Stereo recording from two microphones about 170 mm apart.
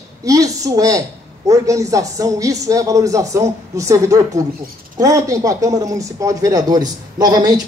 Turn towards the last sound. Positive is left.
turn(degrees=-25)  # may be behind; listen again after turning